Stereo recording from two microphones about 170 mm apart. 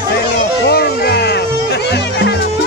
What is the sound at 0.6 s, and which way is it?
Music, 70° left (ahead or behind).